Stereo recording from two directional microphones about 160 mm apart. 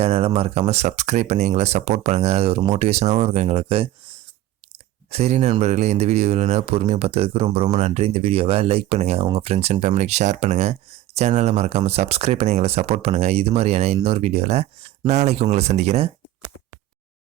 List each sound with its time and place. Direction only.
0.0 s speech: 40° right (ahead or behind)
5.1 s speech: 45° right (ahead or behind)